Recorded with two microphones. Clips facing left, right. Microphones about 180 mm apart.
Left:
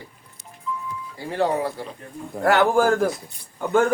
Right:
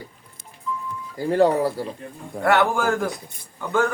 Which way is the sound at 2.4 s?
35° left (ahead or behind).